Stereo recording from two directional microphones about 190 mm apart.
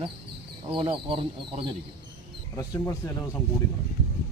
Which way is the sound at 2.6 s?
15° left (ahead or behind).